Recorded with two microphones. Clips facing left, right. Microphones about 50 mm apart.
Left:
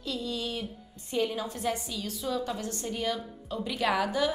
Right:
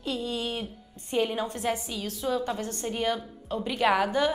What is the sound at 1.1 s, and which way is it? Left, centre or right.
A woman's voice, right.